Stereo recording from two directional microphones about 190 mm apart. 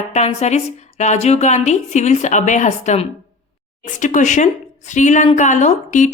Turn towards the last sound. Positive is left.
turn(degrees=40)  # may be behind; listen again after turning